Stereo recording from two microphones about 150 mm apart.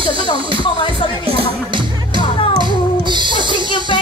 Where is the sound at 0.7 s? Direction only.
35° left (ahead or behind).